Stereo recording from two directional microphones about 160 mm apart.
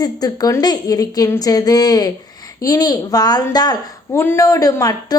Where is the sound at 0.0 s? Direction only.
25° left (ahead or behind).